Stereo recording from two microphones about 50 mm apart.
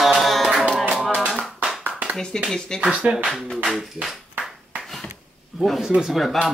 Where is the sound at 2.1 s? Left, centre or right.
Centre.